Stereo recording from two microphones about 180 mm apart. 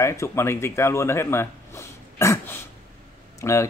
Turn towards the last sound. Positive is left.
turn(degrees=15)  # may be behind; listen again after turning